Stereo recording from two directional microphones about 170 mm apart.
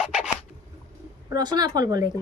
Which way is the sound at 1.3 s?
25° right (ahead or behind).